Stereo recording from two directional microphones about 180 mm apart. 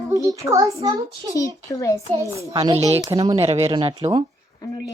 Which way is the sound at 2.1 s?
15° right (ahead or behind).